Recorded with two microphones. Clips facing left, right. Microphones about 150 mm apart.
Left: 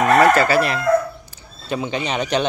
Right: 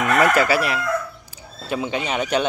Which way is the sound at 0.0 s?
35° left (ahead or behind).